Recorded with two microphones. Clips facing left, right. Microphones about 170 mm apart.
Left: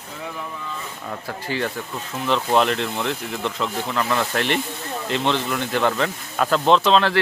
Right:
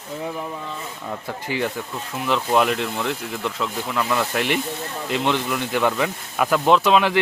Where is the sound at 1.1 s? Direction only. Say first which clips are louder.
Even; 15° right (ahead or behind).